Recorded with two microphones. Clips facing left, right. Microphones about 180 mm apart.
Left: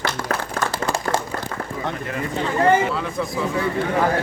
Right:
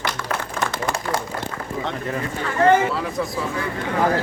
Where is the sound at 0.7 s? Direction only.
30° left (ahead or behind).